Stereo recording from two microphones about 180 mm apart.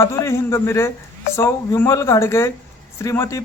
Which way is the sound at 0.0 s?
15° left (ahead or behind).